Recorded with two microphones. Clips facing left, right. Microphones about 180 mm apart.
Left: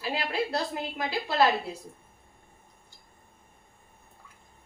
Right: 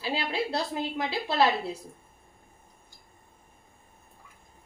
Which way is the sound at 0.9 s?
25° right (ahead or behind).